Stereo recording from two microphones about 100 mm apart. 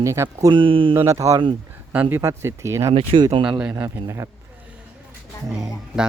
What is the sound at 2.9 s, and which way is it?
Speech, 60° right (ahead or behind).